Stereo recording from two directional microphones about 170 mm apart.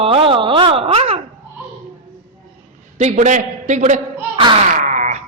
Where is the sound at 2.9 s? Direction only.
45° right (ahead or behind).